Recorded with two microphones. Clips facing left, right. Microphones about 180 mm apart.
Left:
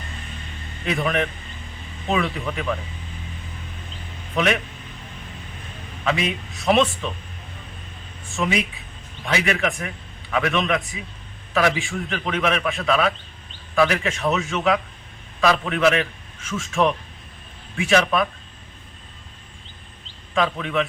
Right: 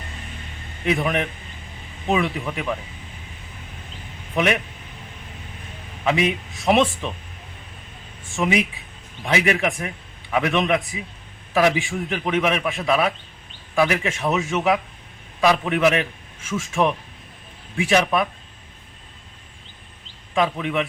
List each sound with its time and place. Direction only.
0.9 s a man's voice: 20° right (ahead or behind)
4.4 s a man's voice: 15° right (ahead or behind)
6.1 s a man's voice: 20° right (ahead or behind)
8.4 s a man's voice: 20° right (ahead or behind)
20.3 s a man's voice: 15° right (ahead or behind)